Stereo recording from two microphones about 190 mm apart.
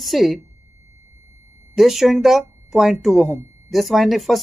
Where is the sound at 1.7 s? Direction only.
Centre (ahead or behind).